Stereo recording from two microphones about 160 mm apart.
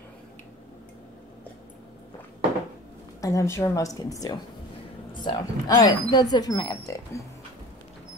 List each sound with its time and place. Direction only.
3.2 s speech: 20° left (ahead or behind)